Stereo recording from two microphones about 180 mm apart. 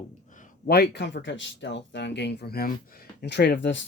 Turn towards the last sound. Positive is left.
turn(degrees=75)  # may be behind; listen again after turning